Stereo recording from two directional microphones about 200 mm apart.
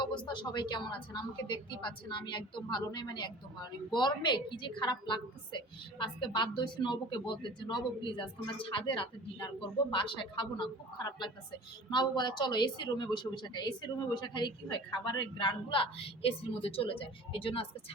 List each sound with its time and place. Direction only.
0.3 s a woman's voice: 25° left (ahead or behind)